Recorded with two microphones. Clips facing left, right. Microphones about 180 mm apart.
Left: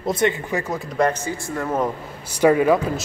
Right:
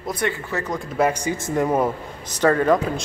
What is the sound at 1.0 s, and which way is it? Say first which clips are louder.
Speech: even; 10° right (ahead or behind).